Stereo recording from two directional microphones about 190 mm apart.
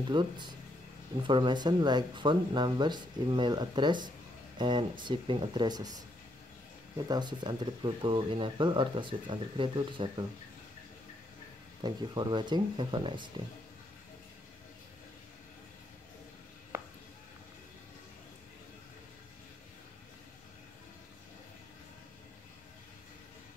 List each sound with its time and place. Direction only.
0.1 s speech: 25° right (ahead or behind)
11.8 s speech: 25° right (ahead or behind)